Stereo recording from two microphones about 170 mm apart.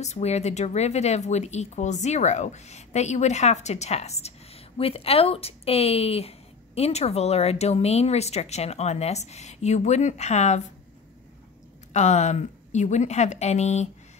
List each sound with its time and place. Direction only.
0.0 s a woman's voice: 40° left (ahead or behind)
11.9 s a woman's voice: 45° left (ahead or behind)